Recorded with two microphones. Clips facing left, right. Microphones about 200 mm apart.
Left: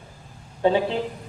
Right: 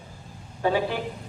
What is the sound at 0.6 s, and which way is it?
Speech, 25° left (ahead or behind).